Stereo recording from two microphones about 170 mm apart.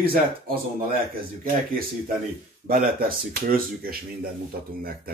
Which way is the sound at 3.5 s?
60° right (ahead or behind).